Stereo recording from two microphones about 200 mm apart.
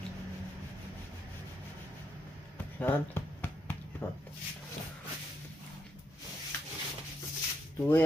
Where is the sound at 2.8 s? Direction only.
10° left (ahead or behind).